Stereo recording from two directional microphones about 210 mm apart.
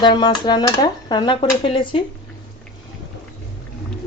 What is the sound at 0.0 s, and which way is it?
Speech, 20° left (ahead or behind).